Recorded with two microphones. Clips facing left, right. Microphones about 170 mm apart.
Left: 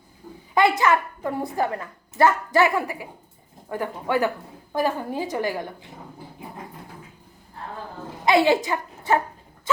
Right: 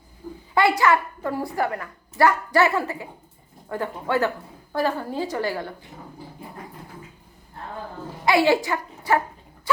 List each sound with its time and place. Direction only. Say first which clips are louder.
0.5 s a woman's voice: even; 20° left (ahead or behind)
8.2 s speech: even; 20° left (ahead or behind)